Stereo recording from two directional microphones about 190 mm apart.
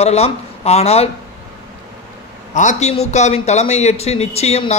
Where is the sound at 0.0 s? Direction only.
35° left (ahead or behind).